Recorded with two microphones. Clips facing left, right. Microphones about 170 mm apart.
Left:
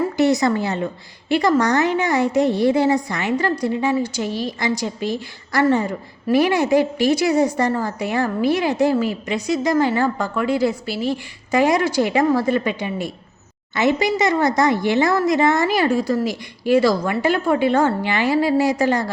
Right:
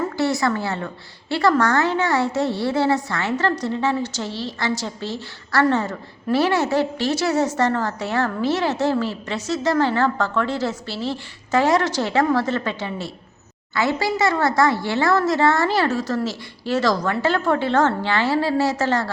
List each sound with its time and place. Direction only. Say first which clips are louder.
0.0 s a woman's voice: left 4 dB; 20° left (ahead or behind)